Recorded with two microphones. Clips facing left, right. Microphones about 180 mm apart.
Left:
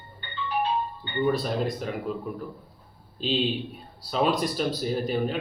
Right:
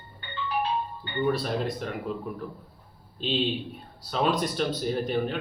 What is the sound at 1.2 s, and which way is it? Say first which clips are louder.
Speech: left 1 dB; centre (ahead or behind).